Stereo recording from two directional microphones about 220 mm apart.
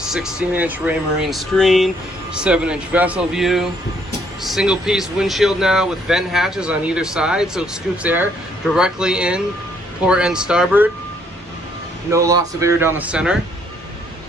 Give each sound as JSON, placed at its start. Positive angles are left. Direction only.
{"t": 0.1, "sound": "speech", "side_deg": -5}
{"t": 12.1, "sound": "speech", "side_deg": -15}